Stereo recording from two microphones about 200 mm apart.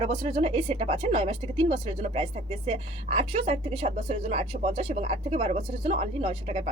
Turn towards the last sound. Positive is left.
turn(degrees=-30)  # may be behind; listen again after turning